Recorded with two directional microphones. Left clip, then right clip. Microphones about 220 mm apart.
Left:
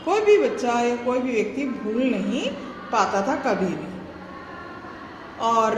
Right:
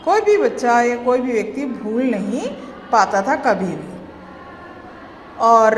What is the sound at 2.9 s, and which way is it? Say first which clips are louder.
Speech: right 6 dB; 30° right (ahead or behind).